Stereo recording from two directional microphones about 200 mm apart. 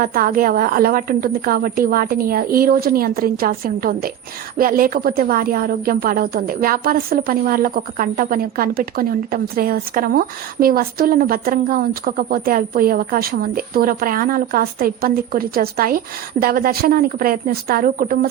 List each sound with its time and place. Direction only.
0.0 s speech: 45° right (ahead or behind)